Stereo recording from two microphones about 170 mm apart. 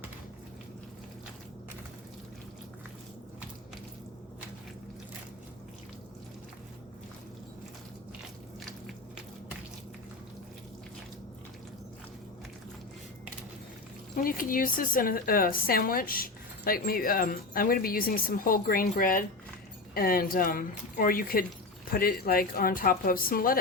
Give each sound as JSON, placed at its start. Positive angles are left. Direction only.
{"t": 14.2, "sound": "speech", "side_deg": 55}